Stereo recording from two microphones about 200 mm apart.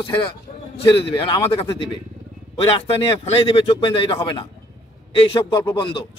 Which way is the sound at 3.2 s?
30° left (ahead or behind).